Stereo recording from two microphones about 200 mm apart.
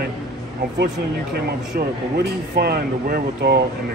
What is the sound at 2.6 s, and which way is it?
Speech, 50° right (ahead or behind).